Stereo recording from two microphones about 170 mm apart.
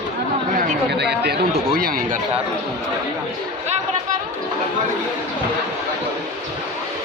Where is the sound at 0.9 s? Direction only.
80° right; by 2.2 s 60° right (ahead or behind).